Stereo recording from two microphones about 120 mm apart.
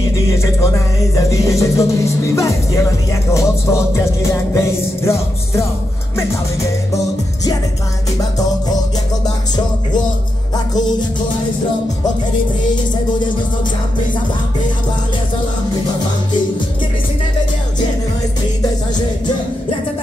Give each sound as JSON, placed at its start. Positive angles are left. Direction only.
{"t": 0.4, "sound": "music", "side_deg": 25}